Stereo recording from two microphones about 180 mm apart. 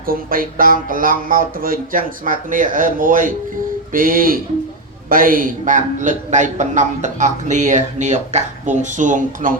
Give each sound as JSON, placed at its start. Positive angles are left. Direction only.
{"t": 0.1, "sound": "a man's voice", "side_deg": -50}